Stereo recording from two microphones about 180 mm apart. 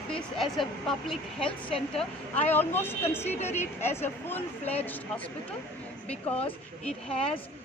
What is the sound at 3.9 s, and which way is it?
Speech, 10° left (ahead or behind).